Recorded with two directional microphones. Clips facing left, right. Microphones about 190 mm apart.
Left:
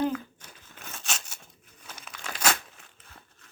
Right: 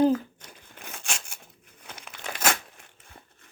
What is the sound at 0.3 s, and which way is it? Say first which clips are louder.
Crumpling: right 2 dB; 10° right (ahead or behind).